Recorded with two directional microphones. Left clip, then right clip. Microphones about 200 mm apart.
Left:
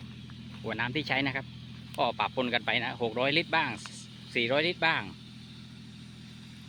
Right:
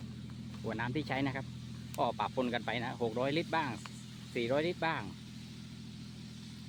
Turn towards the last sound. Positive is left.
turn(degrees=0)  # may be behind; listen again after turning